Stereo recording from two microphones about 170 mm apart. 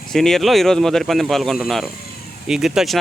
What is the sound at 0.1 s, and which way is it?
Speech, centre (ahead or behind).